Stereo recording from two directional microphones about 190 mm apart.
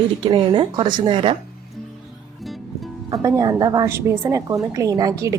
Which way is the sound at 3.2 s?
20° right (ahead or behind).